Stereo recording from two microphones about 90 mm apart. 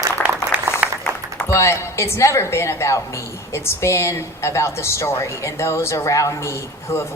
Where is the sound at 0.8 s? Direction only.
15° right (ahead or behind).